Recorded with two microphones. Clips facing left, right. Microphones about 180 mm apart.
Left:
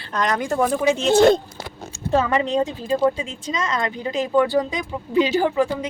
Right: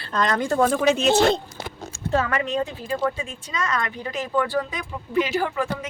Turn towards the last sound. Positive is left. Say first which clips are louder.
# left 5 dB
turn(degrees=20)  # may be behind; listen again after turning